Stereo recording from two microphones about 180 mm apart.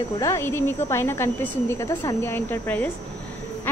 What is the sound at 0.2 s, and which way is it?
A woman's voice, 15° left (ahead or behind).